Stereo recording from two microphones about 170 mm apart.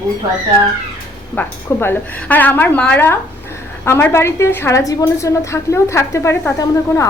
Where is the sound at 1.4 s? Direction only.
10° left (ahead or behind).